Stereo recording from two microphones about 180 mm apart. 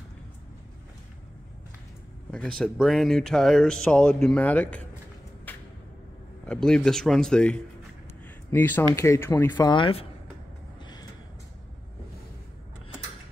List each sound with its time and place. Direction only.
2.3 s speech: 5° left (ahead or behind)
5.5 s a sound: 10° left (ahead or behind)
6.4 s speech: 5° left (ahead or behind); by 10.0 s 30° left (ahead or behind)